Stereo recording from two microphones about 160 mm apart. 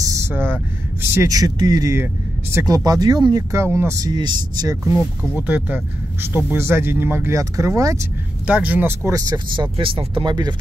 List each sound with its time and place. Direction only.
0.0 s vehicle: 20° right (ahead or behind)
1.1 s speech: 20° right (ahead or behind)
5.3 s speech: 10° right (ahead or behind)
8.5 s speech: 10° right (ahead or behind); by 10.5 s 25° right (ahead or behind)